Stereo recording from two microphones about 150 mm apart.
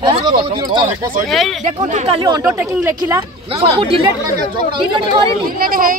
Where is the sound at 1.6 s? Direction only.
50° right (ahead or behind).